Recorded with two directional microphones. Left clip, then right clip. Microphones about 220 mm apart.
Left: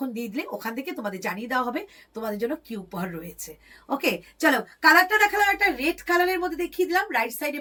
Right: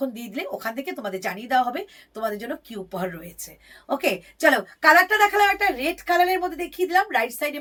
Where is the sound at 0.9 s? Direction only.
10° right (ahead or behind).